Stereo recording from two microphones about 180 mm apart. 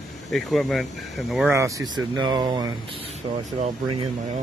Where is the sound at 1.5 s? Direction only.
15° right (ahead or behind).